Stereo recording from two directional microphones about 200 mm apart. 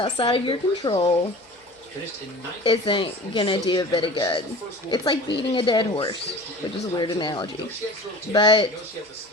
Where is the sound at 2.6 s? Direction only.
25° left (ahead or behind).